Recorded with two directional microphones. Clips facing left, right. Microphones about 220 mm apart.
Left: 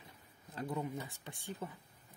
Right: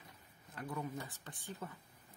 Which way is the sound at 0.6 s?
20° left (ahead or behind).